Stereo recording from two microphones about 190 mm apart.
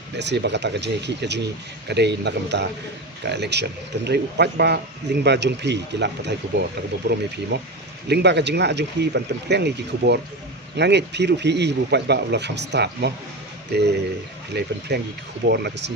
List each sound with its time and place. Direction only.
0.2 s speech: 65° right (ahead or behind)
14.5 s speech: 60° right (ahead or behind)